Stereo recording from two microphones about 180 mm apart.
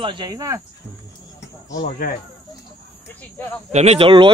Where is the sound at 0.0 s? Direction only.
25° right (ahead or behind).